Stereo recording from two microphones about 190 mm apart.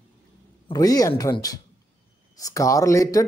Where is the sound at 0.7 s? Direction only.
20° left (ahead or behind).